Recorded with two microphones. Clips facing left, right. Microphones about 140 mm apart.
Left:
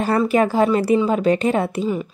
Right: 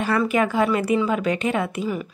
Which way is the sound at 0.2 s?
35° left (ahead or behind).